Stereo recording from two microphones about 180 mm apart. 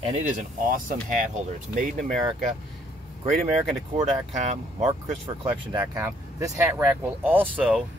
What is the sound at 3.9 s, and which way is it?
Speech, 40° right (ahead or behind).